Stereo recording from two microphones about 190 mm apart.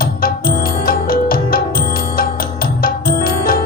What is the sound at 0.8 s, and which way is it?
Music, 50° left (ahead or behind).